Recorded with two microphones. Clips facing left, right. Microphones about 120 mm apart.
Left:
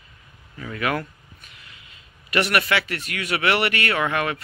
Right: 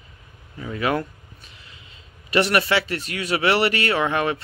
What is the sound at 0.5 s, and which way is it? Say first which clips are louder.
Speech: right 2 dB; 20° right (ahead or behind).